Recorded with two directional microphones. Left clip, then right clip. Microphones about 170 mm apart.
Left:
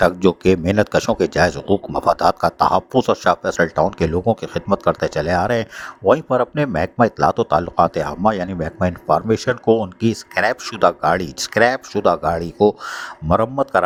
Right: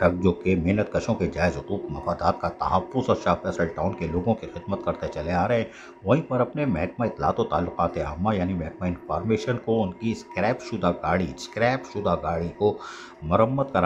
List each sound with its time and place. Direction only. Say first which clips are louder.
0.0 s speech: left 7 dB; 55° left (ahead or behind)